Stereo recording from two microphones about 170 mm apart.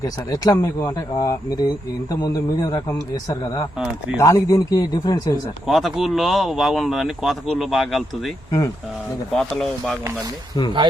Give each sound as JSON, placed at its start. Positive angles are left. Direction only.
{"t": 0.0, "sound": "speech", "side_deg": 20}
{"t": 4.2, "sound": "speech", "side_deg": 20}
{"t": 5.6, "sound": "speech", "side_deg": 0}
{"t": 8.4, "sound": "speech", "side_deg": 20}
{"t": 9.3, "sound": "speech", "side_deg": 5}